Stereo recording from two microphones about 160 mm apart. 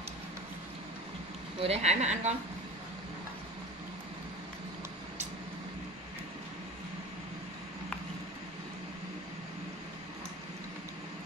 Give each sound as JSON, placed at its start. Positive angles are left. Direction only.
{"t": 1.6, "sound": "speech", "side_deg": -40}